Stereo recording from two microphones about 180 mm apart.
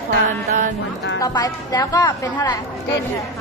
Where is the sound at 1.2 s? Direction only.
20° left (ahead or behind).